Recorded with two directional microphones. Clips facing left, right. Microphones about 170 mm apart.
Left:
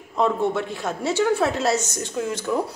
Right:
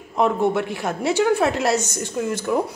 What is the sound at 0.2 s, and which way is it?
A woman's voice, 15° right (ahead or behind).